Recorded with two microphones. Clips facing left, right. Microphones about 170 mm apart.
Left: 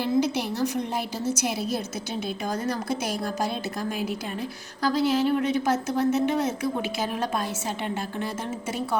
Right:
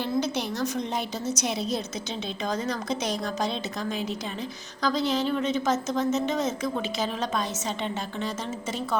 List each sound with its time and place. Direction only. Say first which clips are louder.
0.0 s a woman's voice: left 3 dB; 10° left (ahead or behind)